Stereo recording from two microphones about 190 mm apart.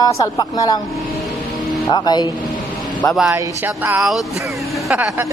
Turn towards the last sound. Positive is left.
turn(degrees=-5)  # may be behind; listen again after turning